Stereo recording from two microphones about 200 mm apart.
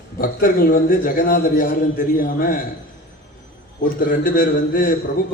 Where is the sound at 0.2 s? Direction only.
45° left (ahead or behind).